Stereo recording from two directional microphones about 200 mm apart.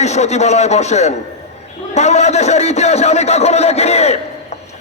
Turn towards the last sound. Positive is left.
turn(degrees=30)  # may be behind; listen again after turning